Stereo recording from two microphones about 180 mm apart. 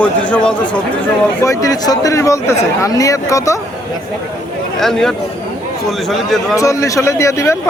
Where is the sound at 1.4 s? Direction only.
15° left (ahead or behind).